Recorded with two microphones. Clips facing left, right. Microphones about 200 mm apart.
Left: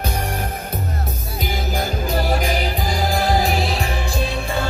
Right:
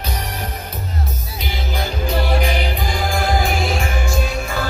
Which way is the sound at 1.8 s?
45° left (ahead or behind).